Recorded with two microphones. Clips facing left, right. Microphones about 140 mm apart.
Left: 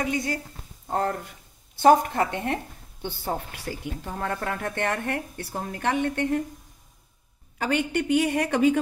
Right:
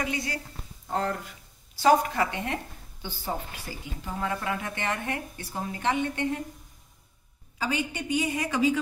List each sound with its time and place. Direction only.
0.0 s a woman's voice: 45° left (ahead or behind)
1.8 s a woman's voice: 55° left (ahead or behind)
7.5 s speech: 60° left (ahead or behind)